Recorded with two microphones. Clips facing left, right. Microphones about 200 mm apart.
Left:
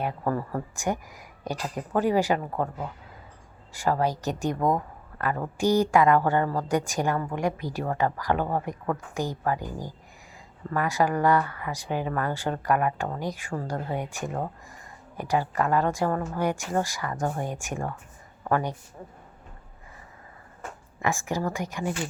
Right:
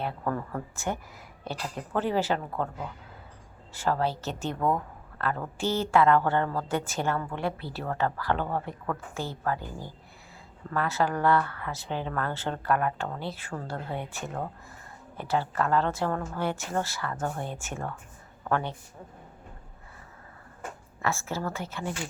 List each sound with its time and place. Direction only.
0.0 s speech: 10° left (ahead or behind)
21.0 s speech: 15° left (ahead or behind)